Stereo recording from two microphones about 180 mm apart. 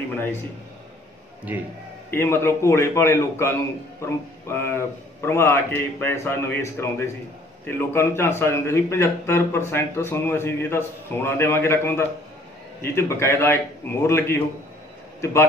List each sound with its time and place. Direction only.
2.0 s a man's voice: 15° left (ahead or behind)